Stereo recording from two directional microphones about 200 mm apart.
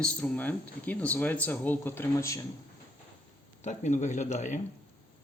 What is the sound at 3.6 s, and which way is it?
Speech, 35° left (ahead or behind).